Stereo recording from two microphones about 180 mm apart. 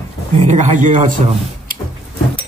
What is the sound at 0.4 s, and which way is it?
Speech, 40° right (ahead or behind).